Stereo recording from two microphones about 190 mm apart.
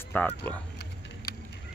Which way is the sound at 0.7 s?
55° left (ahead or behind).